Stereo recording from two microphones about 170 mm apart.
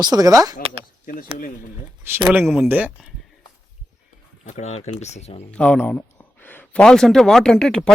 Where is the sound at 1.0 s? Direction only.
50° left (ahead or behind).